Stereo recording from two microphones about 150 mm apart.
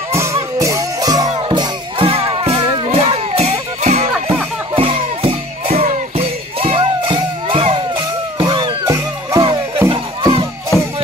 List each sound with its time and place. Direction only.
0.1 s music: 20° right (ahead or behind)